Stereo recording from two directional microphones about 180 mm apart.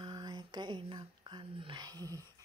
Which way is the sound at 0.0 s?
25° right (ahead or behind).